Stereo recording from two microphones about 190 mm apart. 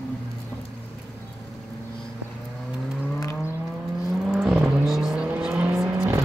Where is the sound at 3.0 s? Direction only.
15° left (ahead or behind).